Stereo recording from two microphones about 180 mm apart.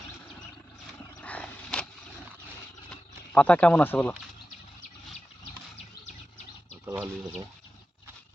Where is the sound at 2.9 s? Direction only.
10° left (ahead or behind).